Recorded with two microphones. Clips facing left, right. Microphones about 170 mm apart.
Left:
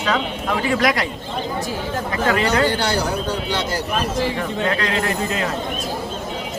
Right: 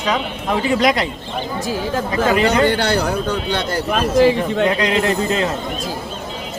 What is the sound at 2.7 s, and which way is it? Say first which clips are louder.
Speech: right 3 dB; 60° right (ahead or behind).